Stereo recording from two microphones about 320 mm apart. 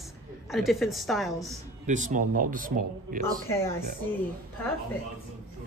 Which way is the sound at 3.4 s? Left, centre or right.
Centre.